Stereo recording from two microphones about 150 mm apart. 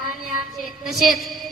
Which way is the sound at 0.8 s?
Centre (ahead or behind).